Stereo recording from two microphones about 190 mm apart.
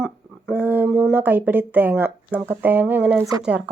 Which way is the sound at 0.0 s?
5° right (ahead or behind).